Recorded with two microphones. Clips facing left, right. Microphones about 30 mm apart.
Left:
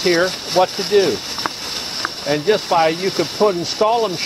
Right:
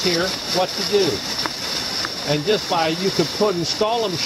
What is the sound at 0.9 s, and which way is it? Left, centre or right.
Speech, centre.